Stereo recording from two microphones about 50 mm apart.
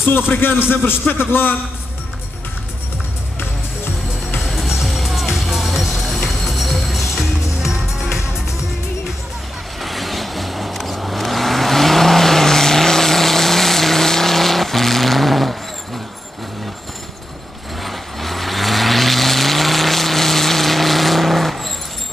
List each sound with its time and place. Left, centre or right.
0.0 s speech: left
3.3 s music: left
4.4 s music: centre
9.8 s vehicle: centre
17.8 s vehicle: centre